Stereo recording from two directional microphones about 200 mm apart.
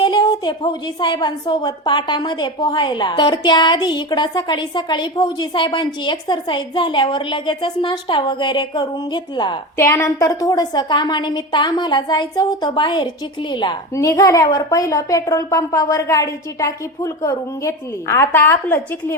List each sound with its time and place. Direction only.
0.0 s a woman's voice: 20° left (ahead or behind)